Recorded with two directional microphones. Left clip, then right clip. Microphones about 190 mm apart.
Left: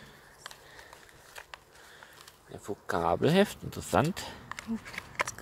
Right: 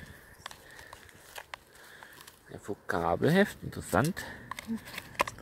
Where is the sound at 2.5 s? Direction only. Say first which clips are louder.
Left 1 dB; centre (ahead or behind).